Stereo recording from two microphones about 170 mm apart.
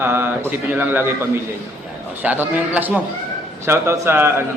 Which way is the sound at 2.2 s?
10° right (ahead or behind).